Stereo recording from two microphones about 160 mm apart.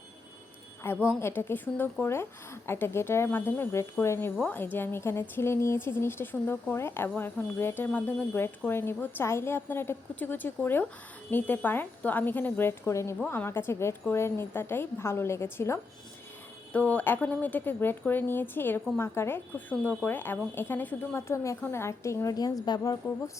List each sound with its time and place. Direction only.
0.8 s speech: 10° left (ahead or behind)